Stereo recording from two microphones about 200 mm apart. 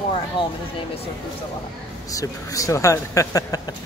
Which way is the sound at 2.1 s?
15° left (ahead or behind).